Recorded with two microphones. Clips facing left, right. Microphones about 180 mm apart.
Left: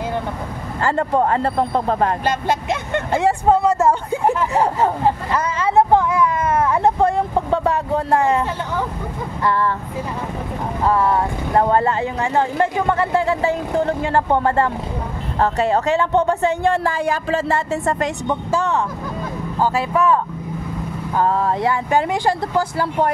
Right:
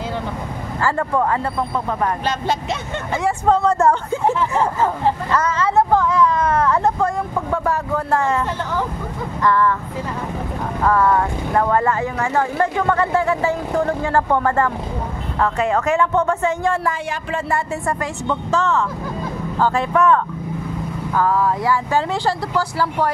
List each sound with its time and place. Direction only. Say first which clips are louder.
0.8 s speech: left 2 dB; 25° left (ahead or behind)
2.2 s speech: left 2 dB; 55° left (ahead or behind)
3.4 s speech: right 2 dB; 5° left (ahead or behind)
4.1 s speech: left 1 dB; 15° left (ahead or behind)
9.4 s speech: right 2 dB; 30° left (ahead or behind)
10.8 s speech: right 1 dB; 25° left (ahead or behind)
13.1 s speech: even; 30° left (ahead or behind)
15.3 s speech: left 1 dB; 35° left (ahead or behind); by 20.2 s 10° left (ahead or behind)
21.1 s speech: even; 25° left (ahead or behind)